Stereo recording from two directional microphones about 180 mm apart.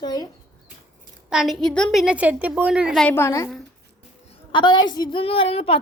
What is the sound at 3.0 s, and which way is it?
Speech, 15° left (ahead or behind).